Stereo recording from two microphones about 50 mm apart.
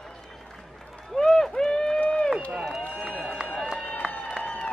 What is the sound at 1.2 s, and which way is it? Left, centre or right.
Run, centre.